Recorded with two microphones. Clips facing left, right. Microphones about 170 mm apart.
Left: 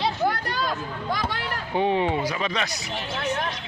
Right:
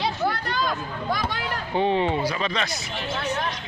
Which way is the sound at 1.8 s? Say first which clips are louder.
Even; 10° left (ahead or behind).